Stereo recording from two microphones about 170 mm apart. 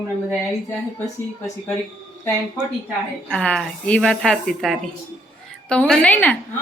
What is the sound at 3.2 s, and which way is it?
Speech, 5° left (ahead or behind).